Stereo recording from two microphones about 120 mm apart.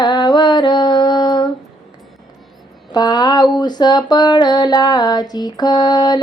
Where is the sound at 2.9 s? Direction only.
35° left (ahead or behind).